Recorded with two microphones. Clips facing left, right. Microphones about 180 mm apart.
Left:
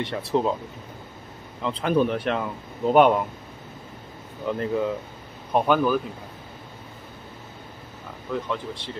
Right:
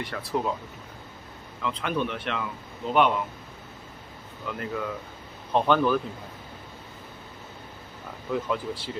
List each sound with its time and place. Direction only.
0.0 s speech: 25° left (ahead or behind)
1.6 s speech: 35° left (ahead or behind)
4.5 s speech: 30° left (ahead or behind)
5.5 s speech: 10° left (ahead or behind)
8.3 s speech: 5° right (ahead or behind)